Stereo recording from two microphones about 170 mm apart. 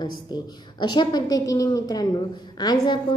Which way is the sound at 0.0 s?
25° left (ahead or behind).